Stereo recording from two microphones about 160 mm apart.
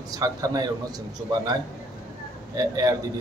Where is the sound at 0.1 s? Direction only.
25° right (ahead or behind).